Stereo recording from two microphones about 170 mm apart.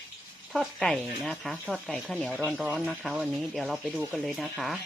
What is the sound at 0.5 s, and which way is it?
Speech, 5° left (ahead or behind).